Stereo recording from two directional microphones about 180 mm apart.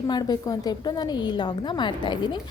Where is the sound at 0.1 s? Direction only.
20° left (ahead or behind).